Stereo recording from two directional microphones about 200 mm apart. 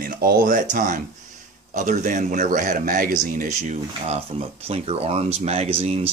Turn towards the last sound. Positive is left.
turn(degrees=-30)  # may be behind; listen again after turning